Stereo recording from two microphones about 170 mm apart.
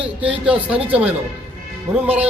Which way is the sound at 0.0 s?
5° right (ahead or behind).